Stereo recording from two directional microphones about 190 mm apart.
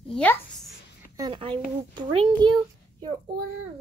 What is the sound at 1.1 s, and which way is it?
A child's voice, 25° right (ahead or behind).